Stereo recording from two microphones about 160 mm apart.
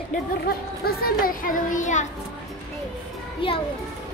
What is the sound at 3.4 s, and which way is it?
Speech, 35° left (ahead or behind).